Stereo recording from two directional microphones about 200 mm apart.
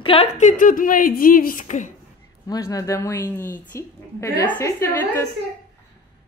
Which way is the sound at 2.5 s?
15° left (ahead or behind).